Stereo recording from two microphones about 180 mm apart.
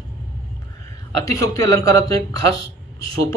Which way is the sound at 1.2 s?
20° left (ahead or behind).